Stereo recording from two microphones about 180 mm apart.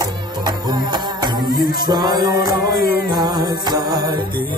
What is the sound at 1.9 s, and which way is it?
Music, 25° right (ahead or behind).